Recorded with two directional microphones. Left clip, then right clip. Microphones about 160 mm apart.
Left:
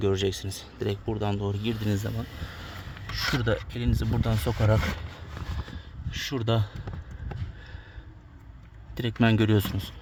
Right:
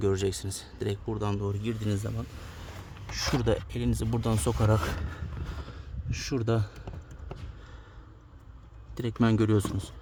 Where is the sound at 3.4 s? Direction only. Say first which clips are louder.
Even; 15° right (ahead or behind).